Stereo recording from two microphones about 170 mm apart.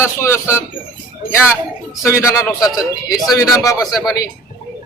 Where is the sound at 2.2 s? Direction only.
15° left (ahead or behind).